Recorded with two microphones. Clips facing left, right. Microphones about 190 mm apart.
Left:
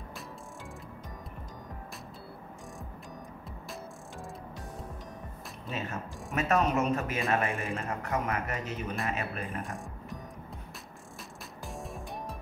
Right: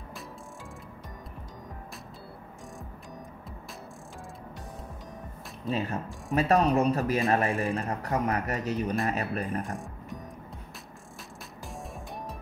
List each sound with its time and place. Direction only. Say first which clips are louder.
5.7 s speech: right 6 dB; 35° right (ahead or behind)
11.7 s music: even; centre (ahead or behind)